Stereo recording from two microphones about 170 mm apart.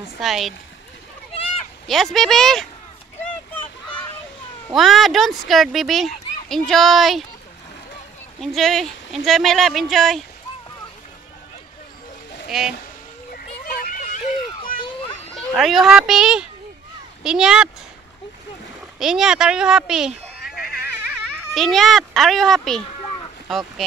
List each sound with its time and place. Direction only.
0.2 s speech: centre (ahead or behind)
1.9 s speech: centre (ahead or behind)
4.7 s speech: centre (ahead or behind)
8.4 s speech: centre (ahead or behind)
12.4 s speech: 5° right (ahead or behind)
13.3 s a sound: 55° left (ahead or behind)
15.3 s speech: centre (ahead or behind)
18.9 s speech: 5° right (ahead or behind)
20.3 s cat: centre (ahead or behind)
21.5 s speech: centre (ahead or behind)